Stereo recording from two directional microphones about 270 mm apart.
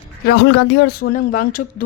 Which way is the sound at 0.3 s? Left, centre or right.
Left.